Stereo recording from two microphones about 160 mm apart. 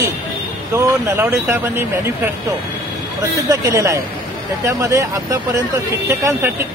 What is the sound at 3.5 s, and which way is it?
Speech, 20° right (ahead or behind).